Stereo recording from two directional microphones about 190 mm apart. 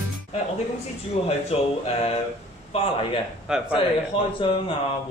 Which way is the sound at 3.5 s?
5° right (ahead or behind).